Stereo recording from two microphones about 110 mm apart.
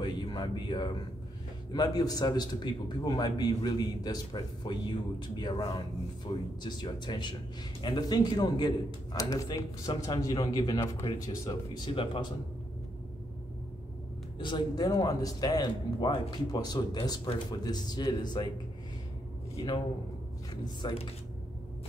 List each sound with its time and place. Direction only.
0.0 s a sound: 45° left (ahead or behind)
1.7 s a man's voice: 35° left (ahead or behind)
14.4 s a man's voice: 40° left (ahead or behind)
20.8 s speech: 40° left (ahead or behind)